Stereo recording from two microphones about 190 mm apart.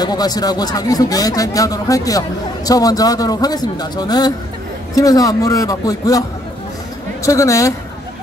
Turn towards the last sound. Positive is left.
turn(degrees=15)  # may be behind; listen again after turning